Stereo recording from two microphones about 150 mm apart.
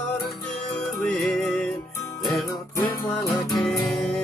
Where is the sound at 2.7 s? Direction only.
20° left (ahead or behind).